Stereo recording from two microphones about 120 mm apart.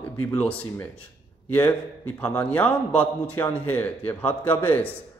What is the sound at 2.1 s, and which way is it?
A man's voice, 15° left (ahead or behind).